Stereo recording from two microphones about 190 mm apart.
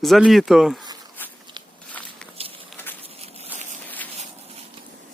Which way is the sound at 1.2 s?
10° left (ahead or behind).